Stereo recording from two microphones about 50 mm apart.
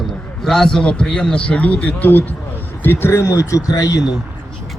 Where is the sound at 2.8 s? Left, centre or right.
Left.